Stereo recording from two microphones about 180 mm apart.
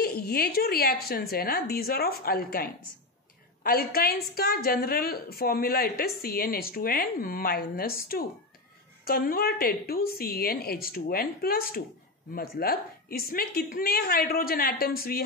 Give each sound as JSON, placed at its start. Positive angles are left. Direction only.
{"t": 0.0, "sound": "a woman's voice", "side_deg": 60}